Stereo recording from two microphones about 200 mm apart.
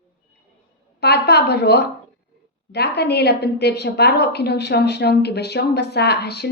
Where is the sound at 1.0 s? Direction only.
55° left (ahead or behind).